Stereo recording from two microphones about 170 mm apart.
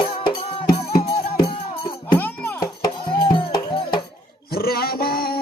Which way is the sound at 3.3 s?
25° left (ahead or behind).